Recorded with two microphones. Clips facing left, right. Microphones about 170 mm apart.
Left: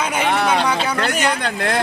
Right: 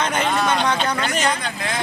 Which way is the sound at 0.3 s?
60° left (ahead or behind).